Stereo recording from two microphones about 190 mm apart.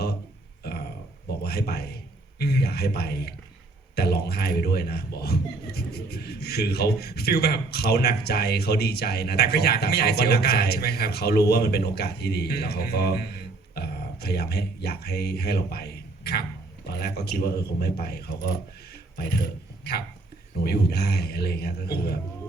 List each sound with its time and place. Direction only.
1.5 s a man's voice: 55° left (ahead or behind)